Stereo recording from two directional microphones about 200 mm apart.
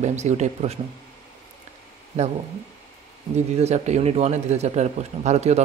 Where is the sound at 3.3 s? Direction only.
35° right (ahead or behind).